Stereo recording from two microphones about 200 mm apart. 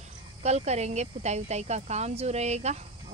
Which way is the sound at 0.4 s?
35° right (ahead or behind).